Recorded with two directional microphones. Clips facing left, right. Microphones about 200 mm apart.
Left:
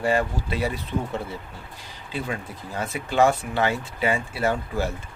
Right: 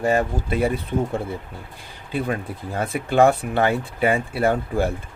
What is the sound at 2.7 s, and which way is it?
Speech, 55° right (ahead or behind).